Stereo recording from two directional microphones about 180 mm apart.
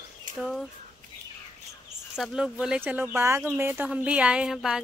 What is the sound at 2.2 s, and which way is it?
Speech, 5° right (ahead or behind).